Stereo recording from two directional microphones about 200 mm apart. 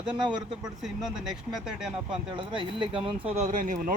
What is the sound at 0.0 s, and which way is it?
Speech, 5° right (ahead or behind).